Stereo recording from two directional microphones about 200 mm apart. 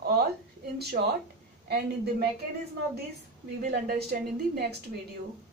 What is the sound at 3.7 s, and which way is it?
Speech, 50° right (ahead or behind).